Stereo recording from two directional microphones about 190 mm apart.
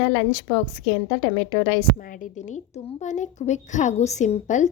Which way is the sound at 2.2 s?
40° left (ahead or behind).